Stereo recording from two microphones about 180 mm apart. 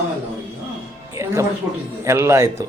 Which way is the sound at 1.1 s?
15° right (ahead or behind).